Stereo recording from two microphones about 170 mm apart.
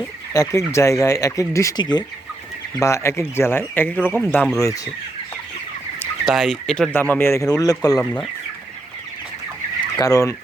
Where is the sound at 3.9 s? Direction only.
5° right (ahead or behind).